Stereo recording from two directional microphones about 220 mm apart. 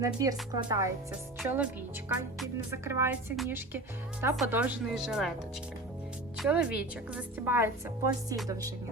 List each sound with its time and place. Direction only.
0.0 s a woman's voice: 15° right (ahead or behind)
1.4 s a woman's voice: 5° right (ahead or behind)
2.8 s a woman's voice: 10° right (ahead or behind)
6.3 s a woman's voice: 5° right (ahead or behind)